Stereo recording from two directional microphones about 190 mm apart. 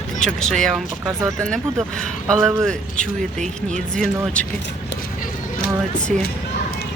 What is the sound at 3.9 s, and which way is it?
Speech, 5° left (ahead or behind).